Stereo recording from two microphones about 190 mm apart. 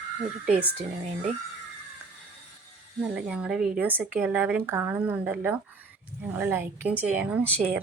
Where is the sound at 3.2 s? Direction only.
5° right (ahead or behind).